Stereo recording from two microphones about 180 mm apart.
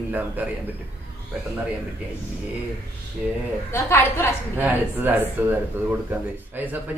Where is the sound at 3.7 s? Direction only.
10° left (ahead or behind).